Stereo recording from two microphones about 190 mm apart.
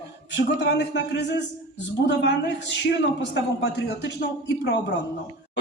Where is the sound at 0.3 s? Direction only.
65° left (ahead or behind).